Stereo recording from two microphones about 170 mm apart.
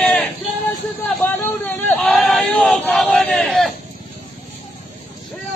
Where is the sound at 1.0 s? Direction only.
10° left (ahead or behind).